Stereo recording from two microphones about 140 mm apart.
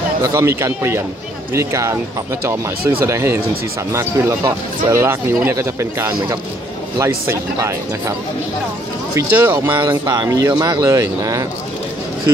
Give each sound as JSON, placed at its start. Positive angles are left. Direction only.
{"t": 0.2, "sound": "speech", "side_deg": -20}
{"t": 3.1, "sound": "speech", "side_deg": -20}
{"t": 9.1, "sound": "speech", "side_deg": -15}
{"t": 9.8, "sound": "speech", "side_deg": -30}